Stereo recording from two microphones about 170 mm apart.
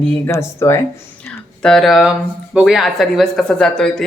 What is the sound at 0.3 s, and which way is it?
Speech, 15° left (ahead or behind).